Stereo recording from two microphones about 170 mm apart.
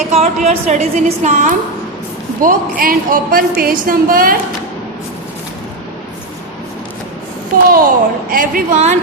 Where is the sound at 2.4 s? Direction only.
55° right (ahead or behind).